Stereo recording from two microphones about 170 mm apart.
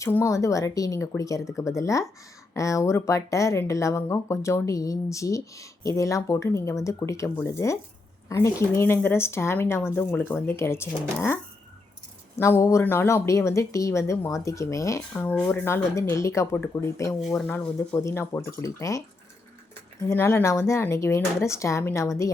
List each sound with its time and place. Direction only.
0.0 s speech: 15° left (ahead or behind)
12.4 s speech: 15° left (ahead or behind)
17.2 s speech: centre (ahead or behind); by 22.3 s 15° left (ahead or behind)